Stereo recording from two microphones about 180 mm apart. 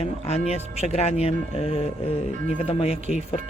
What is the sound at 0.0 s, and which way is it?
Music, 35° left (ahead or behind).